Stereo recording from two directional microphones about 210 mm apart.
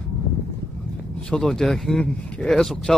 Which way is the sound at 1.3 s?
5° left (ahead or behind).